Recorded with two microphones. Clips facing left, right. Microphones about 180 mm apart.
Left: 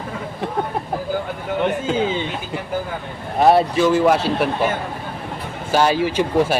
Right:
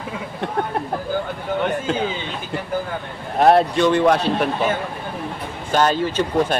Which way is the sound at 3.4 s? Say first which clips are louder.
Even; 5° left (ahead or behind).